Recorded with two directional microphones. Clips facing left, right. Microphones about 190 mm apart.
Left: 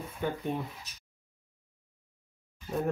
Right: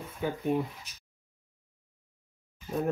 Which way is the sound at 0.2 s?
5° right (ahead or behind).